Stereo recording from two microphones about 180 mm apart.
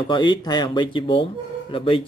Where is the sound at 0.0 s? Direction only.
25° left (ahead or behind).